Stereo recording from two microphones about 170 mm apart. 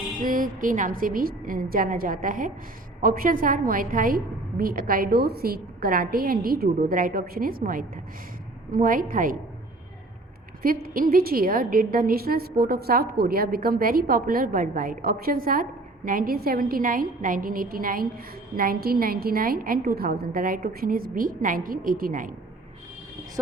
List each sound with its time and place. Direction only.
0.2 s a woman's voice: 55° right (ahead or behind)
10.6 s a woman's voice: 55° right (ahead or behind)